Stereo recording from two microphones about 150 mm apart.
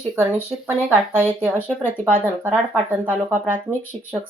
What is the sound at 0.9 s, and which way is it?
Speech, 15° right (ahead or behind).